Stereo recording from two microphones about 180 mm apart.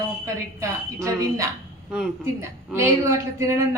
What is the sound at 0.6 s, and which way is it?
A woman's voice, 15° right (ahead or behind).